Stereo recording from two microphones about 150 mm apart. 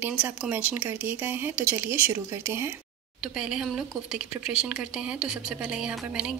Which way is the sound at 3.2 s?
5° right (ahead or behind).